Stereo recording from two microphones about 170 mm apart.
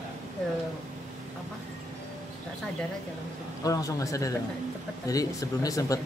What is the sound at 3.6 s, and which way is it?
Speech, 20° left (ahead or behind).